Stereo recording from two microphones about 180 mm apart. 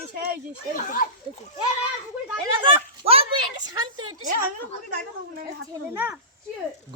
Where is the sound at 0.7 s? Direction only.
50° left (ahead or behind).